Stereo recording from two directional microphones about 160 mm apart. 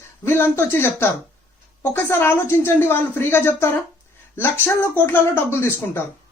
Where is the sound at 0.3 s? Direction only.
15° left (ahead or behind).